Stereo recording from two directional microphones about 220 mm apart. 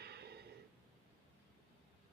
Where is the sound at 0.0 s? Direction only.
45° right (ahead or behind).